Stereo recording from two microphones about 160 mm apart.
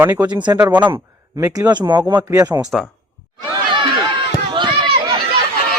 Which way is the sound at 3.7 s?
30° right (ahead or behind).